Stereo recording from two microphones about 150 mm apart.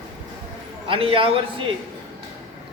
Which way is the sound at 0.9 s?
35° right (ahead or behind).